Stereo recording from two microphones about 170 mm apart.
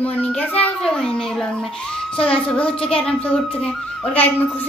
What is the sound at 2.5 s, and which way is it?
Speech, 5° left (ahead or behind).